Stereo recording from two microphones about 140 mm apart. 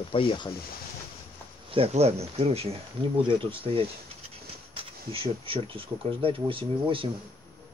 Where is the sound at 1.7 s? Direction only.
45° right (ahead or behind).